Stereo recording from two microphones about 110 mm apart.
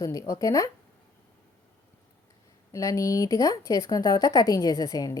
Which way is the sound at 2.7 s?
30° left (ahead or behind).